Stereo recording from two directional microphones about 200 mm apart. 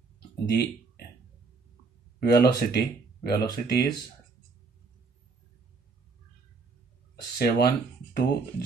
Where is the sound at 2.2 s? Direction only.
50° left (ahead or behind).